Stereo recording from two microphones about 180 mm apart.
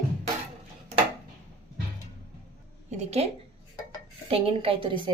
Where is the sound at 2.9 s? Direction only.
35° right (ahead or behind).